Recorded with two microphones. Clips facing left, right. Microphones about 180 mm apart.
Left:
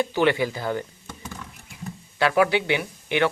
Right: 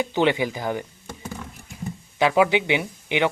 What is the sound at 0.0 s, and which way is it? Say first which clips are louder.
Speech: even; 20° right (ahead or behind).